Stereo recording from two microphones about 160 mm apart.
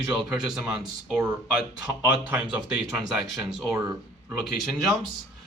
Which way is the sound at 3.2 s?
Centre (ahead or behind).